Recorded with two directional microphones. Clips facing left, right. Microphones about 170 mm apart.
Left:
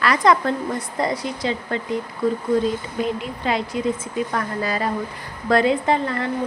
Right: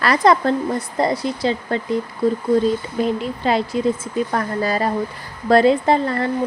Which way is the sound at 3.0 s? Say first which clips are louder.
Right 3 dB; 35° right (ahead or behind).